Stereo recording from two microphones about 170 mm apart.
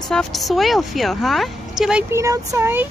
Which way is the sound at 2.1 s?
20° right (ahead or behind).